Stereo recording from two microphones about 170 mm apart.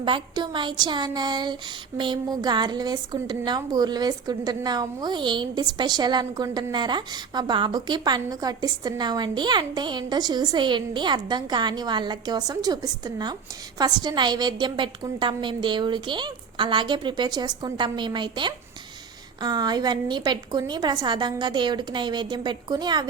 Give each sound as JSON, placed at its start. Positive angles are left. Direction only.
{"t": 0.0, "sound": "a woman's voice", "side_deg": -30}